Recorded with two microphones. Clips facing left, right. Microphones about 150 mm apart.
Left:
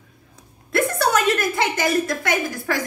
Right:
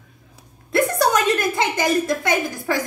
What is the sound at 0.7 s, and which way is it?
A woman's voice, 20° right (ahead or behind).